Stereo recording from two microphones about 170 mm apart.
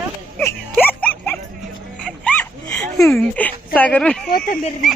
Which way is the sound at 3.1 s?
5° left (ahead or behind).